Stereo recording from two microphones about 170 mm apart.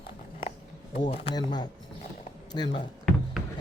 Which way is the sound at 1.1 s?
30° left (ahead or behind).